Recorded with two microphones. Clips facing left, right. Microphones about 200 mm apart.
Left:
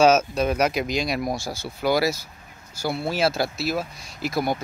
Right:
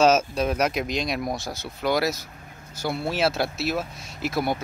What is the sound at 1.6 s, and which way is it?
Speech, 5° left (ahead or behind).